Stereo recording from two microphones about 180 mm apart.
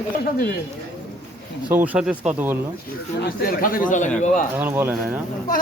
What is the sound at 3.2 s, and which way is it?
Speech, 55° left (ahead or behind).